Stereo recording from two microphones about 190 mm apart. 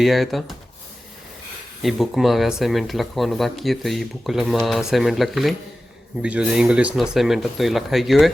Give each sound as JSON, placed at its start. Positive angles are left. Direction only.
{"t": 0.0, "sound": "speech", "side_deg": 0}
{"t": 1.8, "sound": "speech", "side_deg": 0}